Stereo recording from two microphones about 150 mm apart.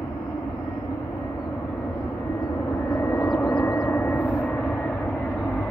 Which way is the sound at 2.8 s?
15° left (ahead or behind).